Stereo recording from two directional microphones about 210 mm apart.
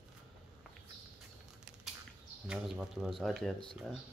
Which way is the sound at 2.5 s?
5° right (ahead or behind).